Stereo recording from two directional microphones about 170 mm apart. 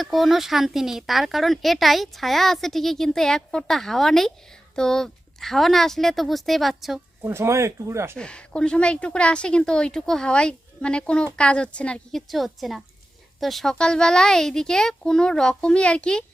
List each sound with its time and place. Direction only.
0.0 s speech: centre (ahead or behind)
7.2 s speech: 15° right (ahead or behind)
8.1 s speech: 5° left (ahead or behind)